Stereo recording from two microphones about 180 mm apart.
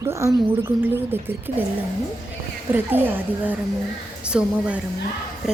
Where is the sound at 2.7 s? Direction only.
10° right (ahead or behind).